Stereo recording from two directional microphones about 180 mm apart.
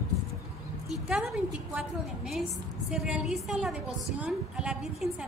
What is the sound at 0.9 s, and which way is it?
A woman's voice, centre (ahead or behind).